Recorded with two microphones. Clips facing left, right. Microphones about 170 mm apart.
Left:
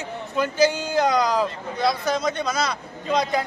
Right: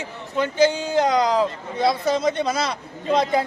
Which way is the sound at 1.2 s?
25° right (ahead or behind).